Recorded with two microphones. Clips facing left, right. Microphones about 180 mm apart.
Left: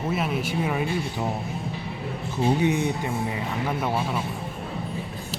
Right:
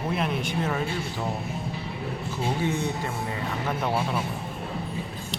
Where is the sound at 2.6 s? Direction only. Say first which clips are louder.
Left 4 dB; 15° left (ahead or behind).